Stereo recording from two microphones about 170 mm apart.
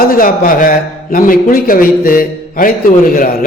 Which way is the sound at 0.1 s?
55° left (ahead or behind).